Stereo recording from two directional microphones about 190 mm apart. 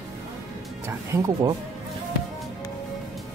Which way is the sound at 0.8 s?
15° right (ahead or behind).